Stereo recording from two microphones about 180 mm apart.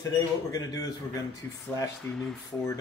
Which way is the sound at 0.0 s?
20° left (ahead or behind).